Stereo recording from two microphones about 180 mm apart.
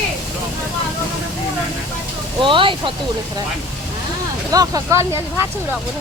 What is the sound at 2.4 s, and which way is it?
Speech, 30° right (ahead or behind).